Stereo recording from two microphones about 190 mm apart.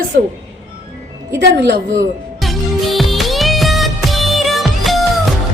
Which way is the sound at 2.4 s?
Centre (ahead or behind).